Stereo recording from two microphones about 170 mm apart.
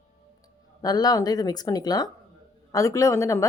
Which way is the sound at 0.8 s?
25° left (ahead or behind).